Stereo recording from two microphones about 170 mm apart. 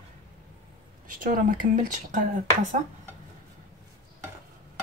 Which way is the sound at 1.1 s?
55° right (ahead or behind).